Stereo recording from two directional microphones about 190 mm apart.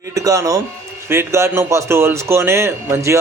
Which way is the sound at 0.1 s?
15° right (ahead or behind).